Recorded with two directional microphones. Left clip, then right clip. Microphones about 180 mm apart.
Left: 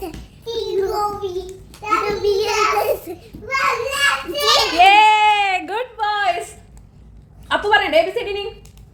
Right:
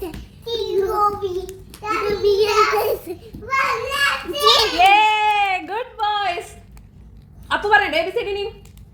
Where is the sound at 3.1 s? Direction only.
5° left (ahead or behind).